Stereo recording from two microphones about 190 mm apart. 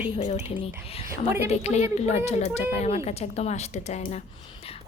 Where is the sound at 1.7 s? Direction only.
35° left (ahead or behind).